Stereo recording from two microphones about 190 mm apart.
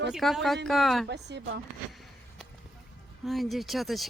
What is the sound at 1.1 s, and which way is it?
Speech, 65° right (ahead or behind).